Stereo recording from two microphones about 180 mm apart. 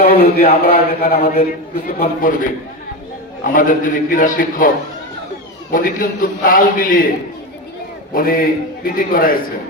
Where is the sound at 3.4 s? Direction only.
50° left (ahead or behind).